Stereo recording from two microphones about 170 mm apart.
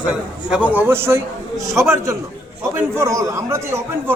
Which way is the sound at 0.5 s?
10° right (ahead or behind).